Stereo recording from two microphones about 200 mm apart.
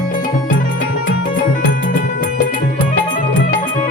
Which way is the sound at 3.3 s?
45° left (ahead or behind).